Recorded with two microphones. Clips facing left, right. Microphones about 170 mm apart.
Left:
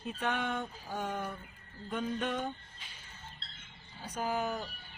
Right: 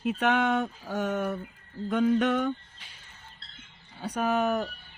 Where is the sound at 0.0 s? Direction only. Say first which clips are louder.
Right 9 dB; 85° right.